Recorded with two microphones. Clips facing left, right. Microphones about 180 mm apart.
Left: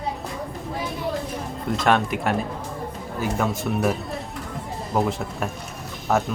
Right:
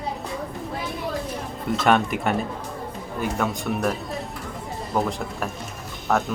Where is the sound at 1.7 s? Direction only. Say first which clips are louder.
Right 1 dB; centre (ahead or behind).